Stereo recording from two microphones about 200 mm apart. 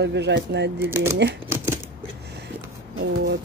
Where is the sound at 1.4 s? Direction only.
15° right (ahead or behind).